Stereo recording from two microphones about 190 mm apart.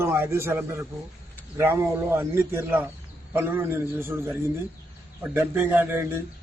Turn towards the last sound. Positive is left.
turn(degrees=-10)  # may be behind; listen again after turning